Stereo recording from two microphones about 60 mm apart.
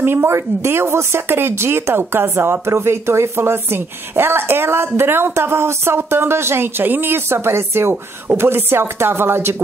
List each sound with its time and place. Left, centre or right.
0.0 s a woman's voice: right